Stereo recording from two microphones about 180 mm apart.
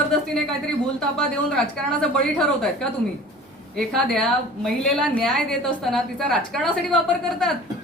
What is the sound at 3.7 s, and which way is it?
A woman's voice, centre (ahead or behind).